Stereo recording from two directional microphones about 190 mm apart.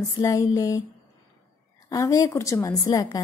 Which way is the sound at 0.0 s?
15° left (ahead or behind).